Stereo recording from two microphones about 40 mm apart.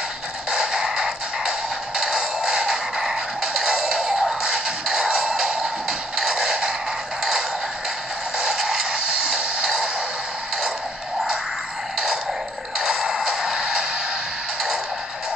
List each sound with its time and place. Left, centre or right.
0.5 s music: centre
8.4 s a sound: centre
12.7 s music: centre